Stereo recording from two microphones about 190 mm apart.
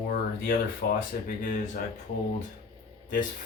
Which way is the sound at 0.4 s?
50° left (ahead or behind).